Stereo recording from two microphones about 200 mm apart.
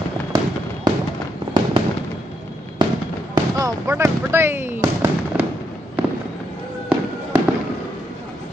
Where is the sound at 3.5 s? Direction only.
15° right (ahead or behind).